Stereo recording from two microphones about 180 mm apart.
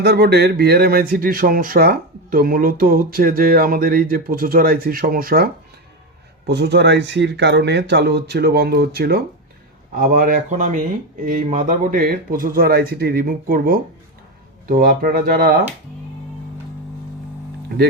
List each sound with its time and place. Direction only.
0.0 s speech: 65° right (ahead or behind)
6.5 s speech: 70° right (ahead or behind)
9.9 s speech: 50° right (ahead or behind)